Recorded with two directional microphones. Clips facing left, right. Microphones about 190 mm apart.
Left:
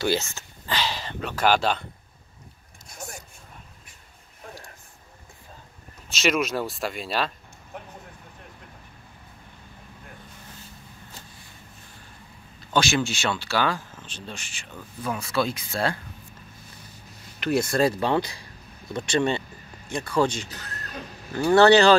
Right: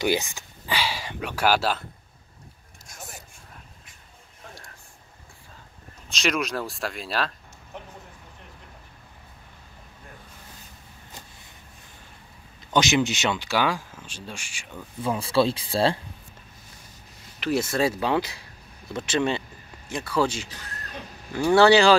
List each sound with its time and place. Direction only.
0.0 s speech: 15° right (ahead or behind)
6.0 s speech: 5° left (ahead or behind)
12.5 s speech: 20° right (ahead or behind)
15.0 s speech: 30° right (ahead or behind)
17.4 s speech: 5° right (ahead or behind)